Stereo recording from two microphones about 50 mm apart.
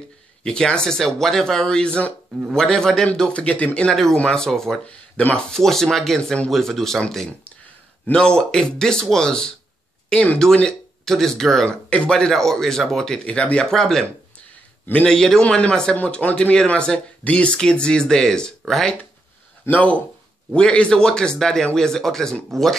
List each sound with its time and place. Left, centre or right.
0.4 s speech: centre
3.3 s speech: left
3.9 s speech: centre
11.1 s speech: centre
15.0 s speech: centre
15.4 s speech: left
15.7 s speech: centre
16.0 s speech: left
16.6 s speech: left
19.7 s speech: left; by 22.8 s centre